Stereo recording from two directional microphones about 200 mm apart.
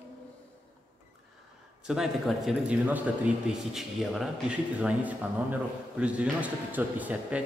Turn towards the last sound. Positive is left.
turn(degrees=-10)  # may be behind; listen again after turning